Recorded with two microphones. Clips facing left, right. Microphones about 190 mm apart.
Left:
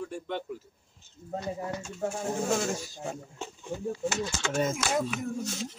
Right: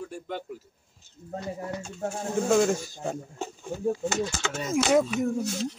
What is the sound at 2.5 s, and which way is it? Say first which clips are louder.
Speech: right 10 dB; 50° right (ahead or behind).